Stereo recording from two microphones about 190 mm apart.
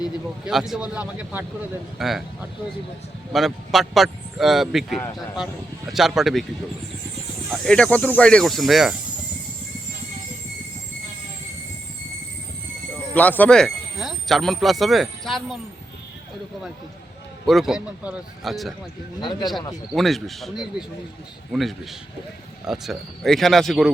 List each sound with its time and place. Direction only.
0.4 s speech: centre (ahead or behind)
7.5 s speech: 5° left (ahead or behind)
13.1 s speech: 10° left (ahead or behind)
17.4 s speech: centre (ahead or behind)
19.2 s speech: 25° left (ahead or behind)
19.9 s speech: centre (ahead or behind)